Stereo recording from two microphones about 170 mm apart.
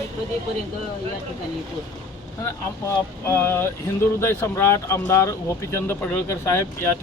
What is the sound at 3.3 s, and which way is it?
Speech, 15° left (ahead or behind).